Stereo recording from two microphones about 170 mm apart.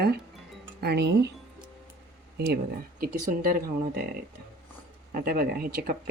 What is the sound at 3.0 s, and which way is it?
Speech, 60° right (ahead or behind).